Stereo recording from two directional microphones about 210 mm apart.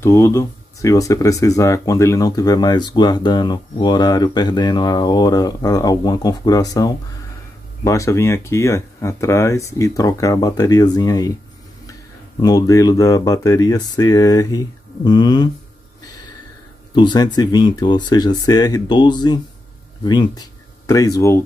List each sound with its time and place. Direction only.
0.0 s speech: 15° left (ahead or behind)
12.4 s speech: 15° left (ahead or behind)
16.9 s speech: 20° left (ahead or behind)